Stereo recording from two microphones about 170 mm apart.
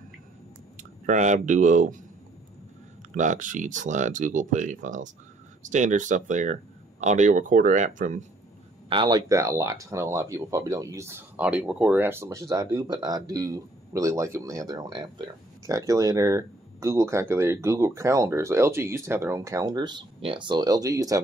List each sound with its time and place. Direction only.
1.0 s speech: 45° right (ahead or behind)
3.2 s speech: 50° right (ahead or behind)
8.8 s speech: 25° right (ahead or behind)